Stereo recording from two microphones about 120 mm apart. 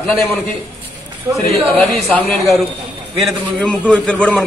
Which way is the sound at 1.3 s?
15° right (ahead or behind).